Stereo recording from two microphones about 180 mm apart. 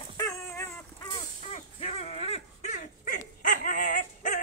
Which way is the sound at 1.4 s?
35° left (ahead or behind).